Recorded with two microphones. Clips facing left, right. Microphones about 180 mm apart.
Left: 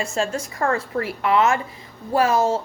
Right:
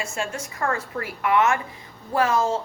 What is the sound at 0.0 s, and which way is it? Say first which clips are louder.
A woman's voice: left 5 dB; 35° left (ahead or behind).